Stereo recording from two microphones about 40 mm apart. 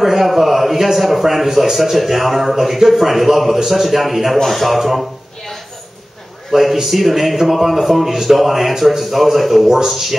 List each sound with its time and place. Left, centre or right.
0.0 s a man's voice: centre
6.5 s a man's voice: centre